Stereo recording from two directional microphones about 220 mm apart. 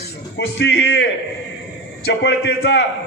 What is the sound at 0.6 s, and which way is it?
A man's voice, 50° left (ahead or behind).